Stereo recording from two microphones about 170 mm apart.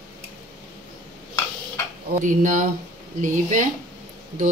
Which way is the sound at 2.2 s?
50° right (ahead or behind).